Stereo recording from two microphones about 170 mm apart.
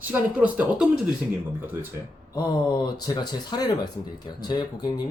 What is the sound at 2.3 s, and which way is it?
Speech, 25° left (ahead or behind).